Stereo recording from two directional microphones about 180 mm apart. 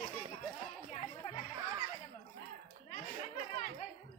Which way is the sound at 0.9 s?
30° left (ahead or behind).